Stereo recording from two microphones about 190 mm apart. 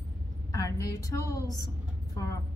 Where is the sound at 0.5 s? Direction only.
15° left (ahead or behind).